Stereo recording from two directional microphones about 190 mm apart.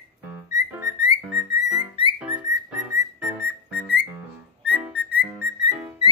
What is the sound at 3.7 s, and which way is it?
Music, 5° right (ahead or behind).